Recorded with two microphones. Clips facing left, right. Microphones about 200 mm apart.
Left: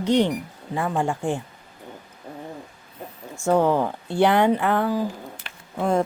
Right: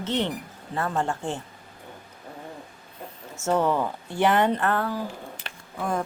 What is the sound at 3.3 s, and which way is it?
Speech, 15° left (ahead or behind).